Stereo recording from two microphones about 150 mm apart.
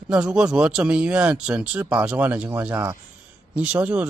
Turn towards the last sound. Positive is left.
turn(degrees=-10)  # may be behind; listen again after turning